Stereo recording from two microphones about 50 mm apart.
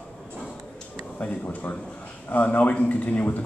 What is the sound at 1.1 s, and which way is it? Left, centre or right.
A man's voice, left.